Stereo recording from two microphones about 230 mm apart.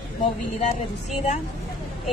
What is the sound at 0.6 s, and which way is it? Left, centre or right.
Speech, left.